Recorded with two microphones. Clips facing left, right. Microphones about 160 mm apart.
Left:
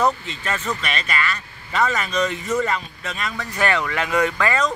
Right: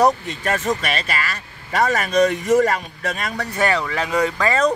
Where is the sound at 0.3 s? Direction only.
50° right (ahead or behind).